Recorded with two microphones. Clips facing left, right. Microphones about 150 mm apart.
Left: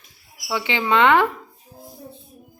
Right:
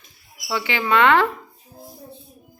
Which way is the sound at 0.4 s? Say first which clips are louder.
Left 1 dB; 15° left (ahead or behind).